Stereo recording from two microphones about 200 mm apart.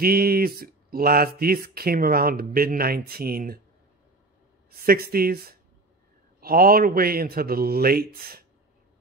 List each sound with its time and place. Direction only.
0.0 s speech: 50° right (ahead or behind)
4.6 s speech: 50° right (ahead or behind)